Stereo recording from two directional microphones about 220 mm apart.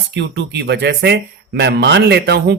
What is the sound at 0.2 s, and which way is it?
Speech, 50° right (ahead or behind).